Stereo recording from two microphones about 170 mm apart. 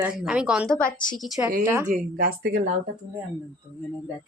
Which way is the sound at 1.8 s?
55° right (ahead or behind).